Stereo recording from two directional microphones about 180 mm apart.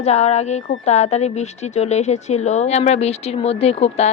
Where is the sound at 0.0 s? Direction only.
35° left (ahead or behind).